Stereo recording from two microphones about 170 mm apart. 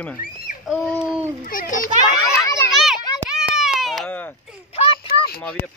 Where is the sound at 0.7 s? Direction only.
5° right (ahead or behind).